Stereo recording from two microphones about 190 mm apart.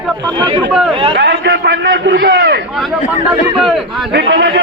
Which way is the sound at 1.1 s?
60° right (ahead or behind).